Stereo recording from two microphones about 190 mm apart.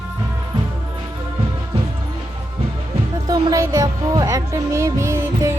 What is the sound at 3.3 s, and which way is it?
Speech, 20° right (ahead or behind).